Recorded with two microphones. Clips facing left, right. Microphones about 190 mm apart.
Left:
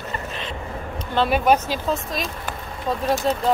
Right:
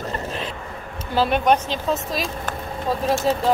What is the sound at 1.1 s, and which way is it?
Speech, centre (ahead or behind).